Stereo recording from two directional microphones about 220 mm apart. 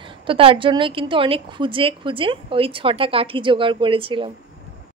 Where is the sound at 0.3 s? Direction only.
25° right (ahead or behind).